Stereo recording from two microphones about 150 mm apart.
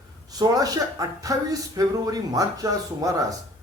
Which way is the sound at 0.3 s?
25° right (ahead or behind).